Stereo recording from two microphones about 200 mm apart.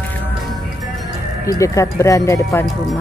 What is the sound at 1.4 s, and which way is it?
Speech, 15° left (ahead or behind).